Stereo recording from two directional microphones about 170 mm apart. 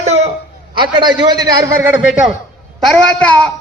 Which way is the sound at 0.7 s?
30° right (ahead or behind).